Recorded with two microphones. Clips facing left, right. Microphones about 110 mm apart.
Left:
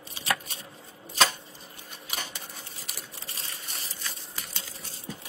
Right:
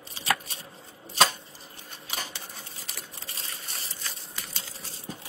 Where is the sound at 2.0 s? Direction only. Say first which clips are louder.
Right 1 dB; 35° right (ahead or behind).